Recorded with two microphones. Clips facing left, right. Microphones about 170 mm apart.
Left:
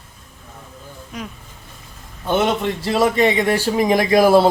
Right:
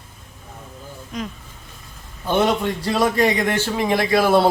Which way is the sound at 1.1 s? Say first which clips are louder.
Right 3 dB; 10° left (ahead or behind).